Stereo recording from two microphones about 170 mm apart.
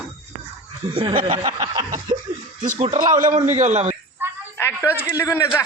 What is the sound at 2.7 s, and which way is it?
Speech, 45° right (ahead or behind).